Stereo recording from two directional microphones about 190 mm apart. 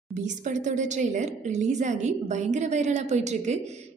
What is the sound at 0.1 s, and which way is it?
A woman's voice, 40° right (ahead or behind).